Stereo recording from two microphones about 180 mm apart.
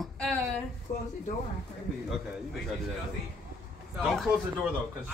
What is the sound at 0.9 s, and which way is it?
Speech, 40° left (ahead or behind).